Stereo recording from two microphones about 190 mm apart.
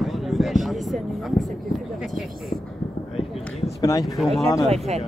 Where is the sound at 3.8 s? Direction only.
20° left (ahead or behind).